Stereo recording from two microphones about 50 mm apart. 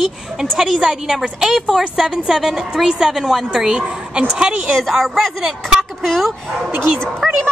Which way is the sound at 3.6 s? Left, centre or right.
Centre.